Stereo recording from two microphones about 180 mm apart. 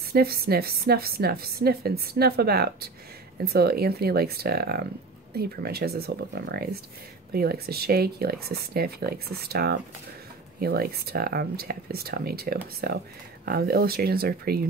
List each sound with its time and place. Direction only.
0.1 s a woman's voice: 60° right (ahead or behind)